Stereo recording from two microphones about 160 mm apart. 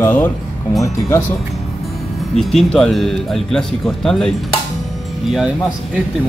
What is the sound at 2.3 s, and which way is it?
Speech, 5° left (ahead or behind).